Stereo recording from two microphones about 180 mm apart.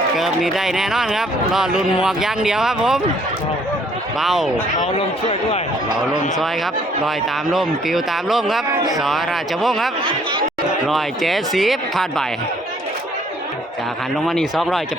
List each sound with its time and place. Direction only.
0.2 s speech: centre (ahead or behind)
4.2 s speech: centre (ahead or behind)
4.8 s a man's voice: 35° left (ahead or behind)
7.5 s speech: centre (ahead or behind)
10.0 s speech: 30° right (ahead or behind)
10.8 s speech: centre (ahead or behind)
14.3 s speech: centre (ahead or behind)